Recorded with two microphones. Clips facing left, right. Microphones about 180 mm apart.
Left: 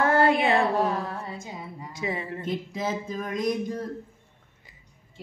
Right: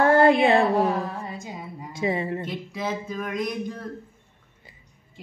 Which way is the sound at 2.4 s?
45° left (ahead or behind).